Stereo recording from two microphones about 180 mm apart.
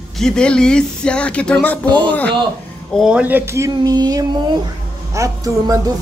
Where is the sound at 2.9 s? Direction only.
5° right (ahead or behind).